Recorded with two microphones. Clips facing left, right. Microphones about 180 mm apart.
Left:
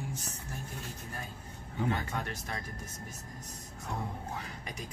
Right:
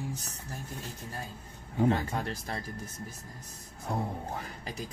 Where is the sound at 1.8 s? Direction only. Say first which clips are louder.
Right 6 dB; 30° right (ahead or behind).